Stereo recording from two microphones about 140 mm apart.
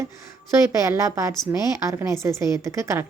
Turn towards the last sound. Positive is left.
turn(degrees=-20)  # may be behind; listen again after turning